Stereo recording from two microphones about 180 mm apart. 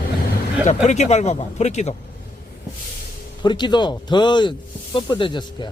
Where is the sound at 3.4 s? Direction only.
25° left (ahead or behind).